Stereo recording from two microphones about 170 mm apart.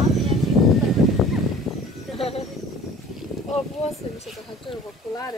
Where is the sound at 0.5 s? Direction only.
Centre (ahead or behind).